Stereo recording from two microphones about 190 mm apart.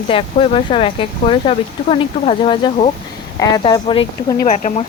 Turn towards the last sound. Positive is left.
turn(degrees=40)  # may be behind; listen again after turning